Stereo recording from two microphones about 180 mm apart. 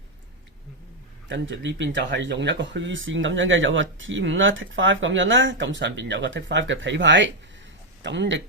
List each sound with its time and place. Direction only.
1.3 s speech: 85° right